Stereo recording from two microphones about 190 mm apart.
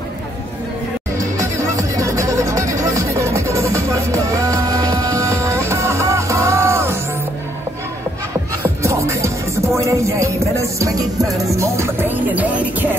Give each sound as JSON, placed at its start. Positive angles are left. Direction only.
{"t": 1.4, "sound": "music", "side_deg": -15}
{"t": 8.6, "sound": "music", "side_deg": -15}